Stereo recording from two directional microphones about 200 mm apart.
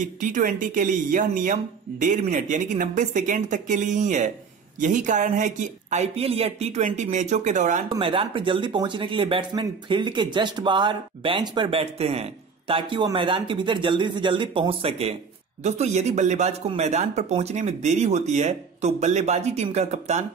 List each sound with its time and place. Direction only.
0.0 s speech: 40° right (ahead or behind)
7.9 s speech: 25° right (ahead or behind)